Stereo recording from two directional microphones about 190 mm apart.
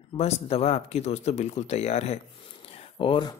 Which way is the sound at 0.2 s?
35° left (ahead or behind).